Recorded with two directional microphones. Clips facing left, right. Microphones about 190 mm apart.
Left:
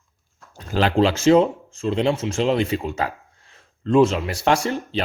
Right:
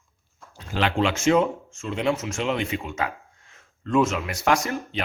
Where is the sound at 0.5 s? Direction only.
40° left (ahead or behind).